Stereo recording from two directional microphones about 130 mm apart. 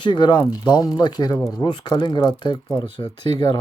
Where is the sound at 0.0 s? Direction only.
35° left (ahead or behind).